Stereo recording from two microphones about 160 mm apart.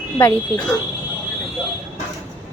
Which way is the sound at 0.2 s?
15° left (ahead or behind).